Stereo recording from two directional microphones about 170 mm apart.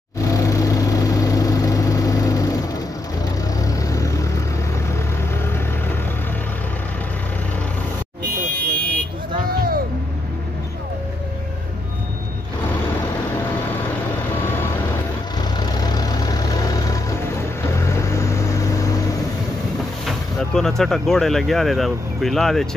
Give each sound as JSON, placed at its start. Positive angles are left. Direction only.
{"t": 0.2, "sound": "vehicle", "side_deg": 20}
{"t": 9.5, "sound": "music", "side_deg": -60}
{"t": 15.3, "sound": "vehicle", "side_deg": 25}
{"t": 20.1, "sound": "speech", "side_deg": 5}